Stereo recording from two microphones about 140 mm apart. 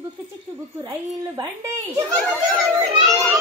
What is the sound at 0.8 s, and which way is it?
Speech, 35° right (ahead or behind).